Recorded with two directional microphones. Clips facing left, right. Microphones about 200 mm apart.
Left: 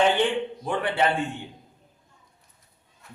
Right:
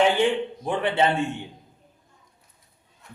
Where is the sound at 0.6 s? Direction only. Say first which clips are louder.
Right 2 dB; 25° right (ahead or behind).